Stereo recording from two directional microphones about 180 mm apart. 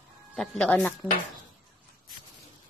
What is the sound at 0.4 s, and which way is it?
Speech, 5° left (ahead or behind).